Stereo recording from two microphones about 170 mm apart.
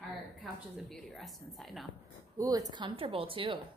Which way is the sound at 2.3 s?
20° right (ahead or behind).